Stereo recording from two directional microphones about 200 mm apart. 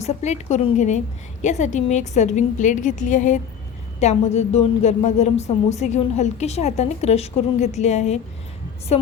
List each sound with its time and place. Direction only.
0.0 s a woman's voice: 35° left (ahead or behind)